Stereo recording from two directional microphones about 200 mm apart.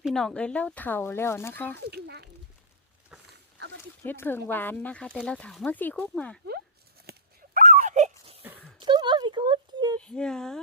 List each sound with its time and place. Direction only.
0.0 s speech: centre (ahead or behind)
1.9 s a sound: 55° right (ahead or behind)
4.0 s speech: 10° left (ahead or behind)
7.1 s dog: 40° right (ahead or behind)
8.8 s a sound: 20° right (ahead or behind)
10.0 s speech: 5° left (ahead or behind)